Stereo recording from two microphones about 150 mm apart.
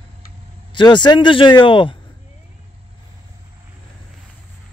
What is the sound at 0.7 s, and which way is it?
Speech, 30° left (ahead or behind).